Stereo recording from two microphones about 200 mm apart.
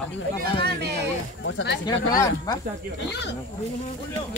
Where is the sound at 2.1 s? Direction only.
20° left (ahead or behind).